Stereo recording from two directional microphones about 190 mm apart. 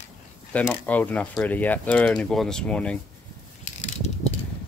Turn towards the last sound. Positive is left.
turn(degrees=35)  # may be behind; listen again after turning